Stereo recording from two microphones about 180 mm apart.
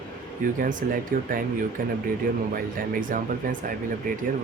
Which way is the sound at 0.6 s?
50° right (ahead or behind).